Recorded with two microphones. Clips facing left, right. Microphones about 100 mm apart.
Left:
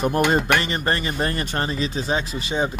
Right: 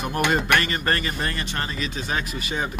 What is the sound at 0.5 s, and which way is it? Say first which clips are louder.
Speech: left 1 dB; 20° left (ahead or behind).